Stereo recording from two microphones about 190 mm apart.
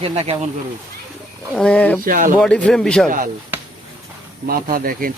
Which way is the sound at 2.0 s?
45° right (ahead or behind).